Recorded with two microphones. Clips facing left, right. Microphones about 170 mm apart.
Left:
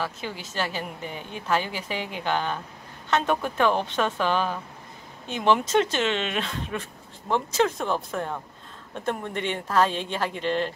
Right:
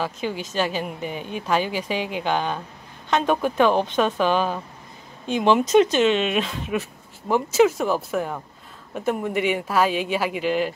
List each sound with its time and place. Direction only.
0.0 s speech: 15° right (ahead or behind)